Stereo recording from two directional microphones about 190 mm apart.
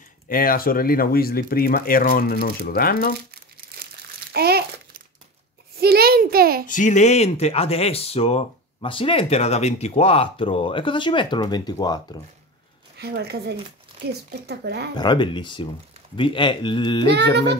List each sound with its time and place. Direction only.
0.3 s speech: 50° left (ahead or behind)
3.8 s crumpling: 55° right (ahead or behind)
5.8 s a sound: 55° right (ahead or behind)
6.7 s speech: 40° left (ahead or behind); by 12.2 s 20° left (ahead or behind)
12.9 s speech: 55° right (ahead or behind)
15.0 s speech: 25° left (ahead or behind)
17.1 s speech: 65° right (ahead or behind)